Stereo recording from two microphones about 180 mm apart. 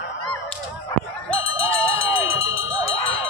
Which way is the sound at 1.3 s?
90° left.